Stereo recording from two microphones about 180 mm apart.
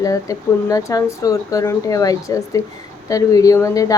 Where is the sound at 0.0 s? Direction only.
20° left (ahead or behind).